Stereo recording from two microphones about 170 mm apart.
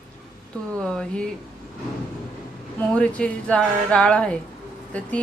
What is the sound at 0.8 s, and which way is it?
Speech, 5° left (ahead or behind).